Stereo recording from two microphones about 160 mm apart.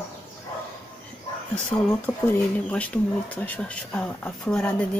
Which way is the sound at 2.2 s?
10° left (ahead or behind).